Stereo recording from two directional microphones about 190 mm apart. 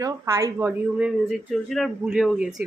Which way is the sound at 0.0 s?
15° right (ahead or behind).